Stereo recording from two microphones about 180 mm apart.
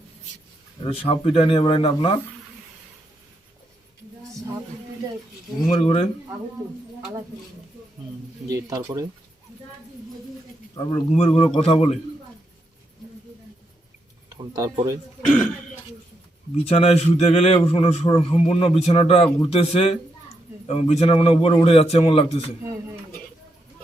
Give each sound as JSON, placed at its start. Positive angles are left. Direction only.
{"t": 0.9, "sound": "a man's voice", "side_deg": 30}
{"t": 5.6, "sound": "a man's voice", "side_deg": 35}
{"t": 8.4, "sound": "speech", "side_deg": -20}
{"t": 10.8, "sound": "speech", "side_deg": 20}
{"t": 11.1, "sound": "a man's voice", "side_deg": 35}
{"t": 14.3, "sound": "speech", "side_deg": -20}
{"t": 16.6, "sound": "a man's voice", "side_deg": 35}